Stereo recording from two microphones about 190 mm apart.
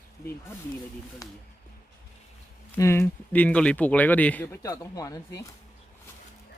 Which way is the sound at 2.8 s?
15° left (ahead or behind).